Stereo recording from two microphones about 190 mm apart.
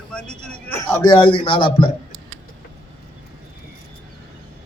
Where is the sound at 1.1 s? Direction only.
25° left (ahead or behind).